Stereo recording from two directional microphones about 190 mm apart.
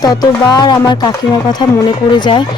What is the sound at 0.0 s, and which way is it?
Speech, 20° left (ahead or behind).